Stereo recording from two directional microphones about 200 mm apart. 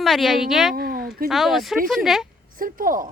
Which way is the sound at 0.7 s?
50° right (ahead or behind).